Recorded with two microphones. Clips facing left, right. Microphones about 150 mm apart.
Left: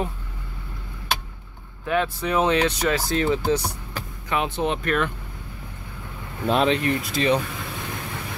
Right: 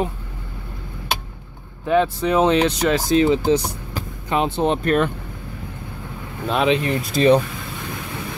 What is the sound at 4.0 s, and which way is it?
Speech, 30° right (ahead or behind).